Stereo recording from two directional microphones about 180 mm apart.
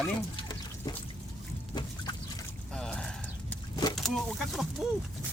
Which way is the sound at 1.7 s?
20° left (ahead or behind).